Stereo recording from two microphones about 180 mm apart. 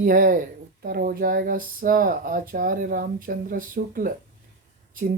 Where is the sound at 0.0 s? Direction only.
50° right (ahead or behind).